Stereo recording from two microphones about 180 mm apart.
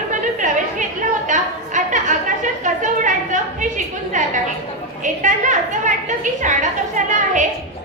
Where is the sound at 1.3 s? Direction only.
45° right (ahead or behind).